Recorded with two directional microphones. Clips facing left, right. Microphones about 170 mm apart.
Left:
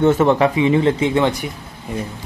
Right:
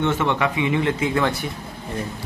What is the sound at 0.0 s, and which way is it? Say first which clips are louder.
Speech: left 7 dB; 40° left (ahead or behind).